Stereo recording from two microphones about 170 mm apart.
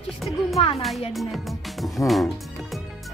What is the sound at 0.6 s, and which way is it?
Speech, 35° left (ahead or behind).